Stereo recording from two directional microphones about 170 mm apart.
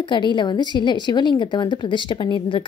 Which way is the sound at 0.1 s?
25° left (ahead or behind).